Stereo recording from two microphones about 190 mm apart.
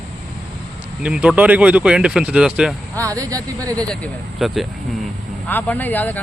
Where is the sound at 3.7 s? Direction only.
5° left (ahead or behind).